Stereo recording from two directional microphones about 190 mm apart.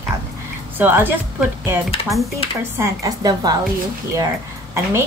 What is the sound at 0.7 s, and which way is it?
Speech, 10° right (ahead or behind).